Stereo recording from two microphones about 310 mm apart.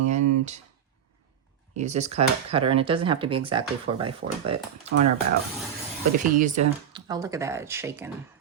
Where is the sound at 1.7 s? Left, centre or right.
Right.